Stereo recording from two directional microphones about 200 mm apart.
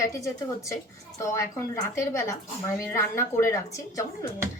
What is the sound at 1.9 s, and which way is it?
A woman's voice, 15° left (ahead or behind).